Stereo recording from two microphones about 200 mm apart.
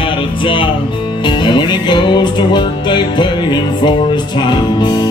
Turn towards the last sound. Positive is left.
turn(degrees=20)  # may be behind; listen again after turning